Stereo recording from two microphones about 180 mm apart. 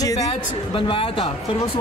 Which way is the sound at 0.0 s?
20° left (ahead or behind).